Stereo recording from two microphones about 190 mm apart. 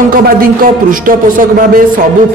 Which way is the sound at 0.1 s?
50° right (ahead or behind).